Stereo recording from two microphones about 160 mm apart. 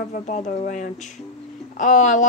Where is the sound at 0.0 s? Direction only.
50° left (ahead or behind).